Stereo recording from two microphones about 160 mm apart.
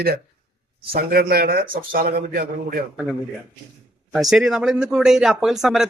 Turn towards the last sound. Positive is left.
turn(degrees=-5)  # may be behind; listen again after turning